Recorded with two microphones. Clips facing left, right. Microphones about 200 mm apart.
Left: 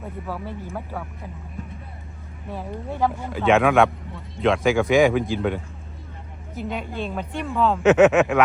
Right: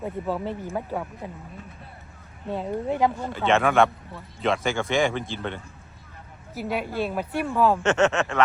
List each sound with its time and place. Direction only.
0.3 s speech: 20° right (ahead or behind)
2.5 s speech: 20° right (ahead or behind)
3.3 s a woman's voice: centre (ahead or behind)
7.8 s speech: centre (ahead or behind)
8.0 s speech: 15° left (ahead or behind)